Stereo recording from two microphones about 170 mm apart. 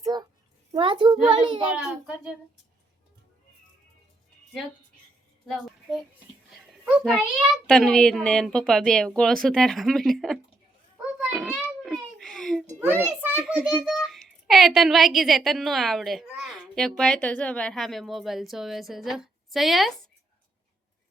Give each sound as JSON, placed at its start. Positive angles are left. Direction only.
{"t": 0.0, "sound": "a sound", "side_deg": -25}
{"t": 0.7, "sound": "a child's voice", "side_deg": -30}
{"t": 1.8, "sound": "a child's voice", "side_deg": -5}
{"t": 6.5, "sound": "a child's voice", "side_deg": 0}
{"t": 10.9, "sound": "a sound", "side_deg": 0}
{"t": 13.2, "sound": "a child's voice", "side_deg": -10}